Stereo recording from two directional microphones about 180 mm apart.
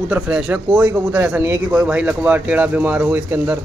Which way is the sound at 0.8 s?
15° right (ahead or behind).